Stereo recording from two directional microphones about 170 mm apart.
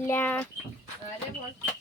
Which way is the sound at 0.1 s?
10° left (ahead or behind).